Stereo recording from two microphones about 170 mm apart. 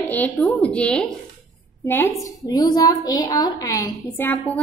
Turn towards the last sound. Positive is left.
turn(degrees=10)  # may be behind; listen again after turning